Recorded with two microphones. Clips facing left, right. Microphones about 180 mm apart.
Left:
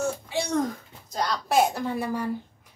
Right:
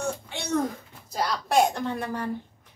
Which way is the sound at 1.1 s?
Centre (ahead or behind).